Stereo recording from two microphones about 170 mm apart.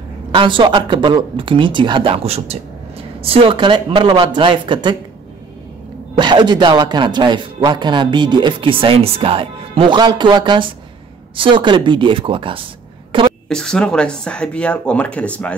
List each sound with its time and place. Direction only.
0.3 s a man's voice: 30° right (ahead or behind)
6.1 s a man's voice: 25° right (ahead or behind)
13.5 s speech: 5° left (ahead or behind)